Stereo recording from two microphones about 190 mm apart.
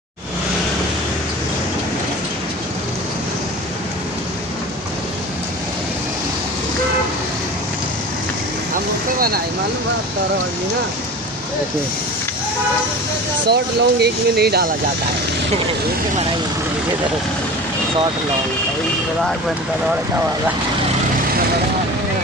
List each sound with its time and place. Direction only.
13.5 s speech: 60° right (ahead or behind)